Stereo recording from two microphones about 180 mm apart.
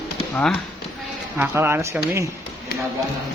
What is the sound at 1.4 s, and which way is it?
Speech, 10° right (ahead or behind).